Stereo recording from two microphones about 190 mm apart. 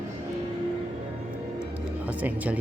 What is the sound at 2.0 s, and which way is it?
Speech, 10° right (ahead or behind).